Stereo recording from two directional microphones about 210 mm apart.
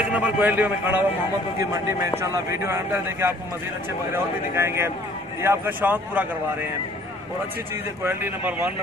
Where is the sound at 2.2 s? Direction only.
15° right (ahead or behind).